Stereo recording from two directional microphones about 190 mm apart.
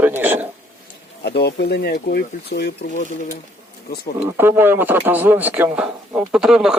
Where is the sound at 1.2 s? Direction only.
60° left (ahead or behind).